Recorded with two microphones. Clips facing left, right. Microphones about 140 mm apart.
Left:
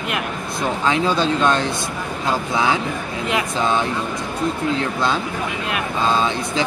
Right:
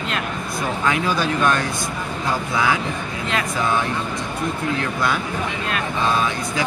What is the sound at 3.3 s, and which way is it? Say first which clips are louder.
Speech: left 2 dB; 25° left (ahead or behind).